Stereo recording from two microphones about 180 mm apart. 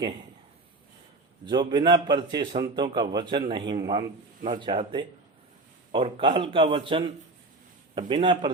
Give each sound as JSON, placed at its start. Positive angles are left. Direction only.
{"t": 1.5, "sound": "a man's voice", "side_deg": -25}
{"t": 8.1, "sound": "a man's voice", "side_deg": -30}